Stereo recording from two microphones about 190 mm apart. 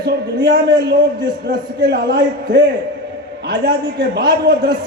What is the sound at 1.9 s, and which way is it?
Speech, 55° right (ahead or behind).